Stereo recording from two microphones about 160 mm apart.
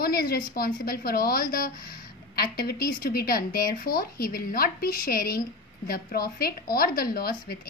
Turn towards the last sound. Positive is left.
turn(degrees=70)  # may be behind; listen again after turning